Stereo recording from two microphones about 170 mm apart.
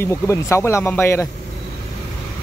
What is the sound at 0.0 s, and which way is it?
Speech, 15° left (ahead or behind).